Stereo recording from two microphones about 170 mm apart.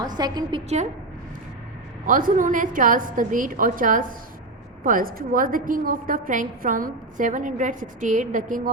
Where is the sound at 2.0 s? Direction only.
50° right (ahead or behind).